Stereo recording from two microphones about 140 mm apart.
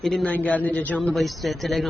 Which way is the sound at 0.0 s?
Centre (ahead or behind).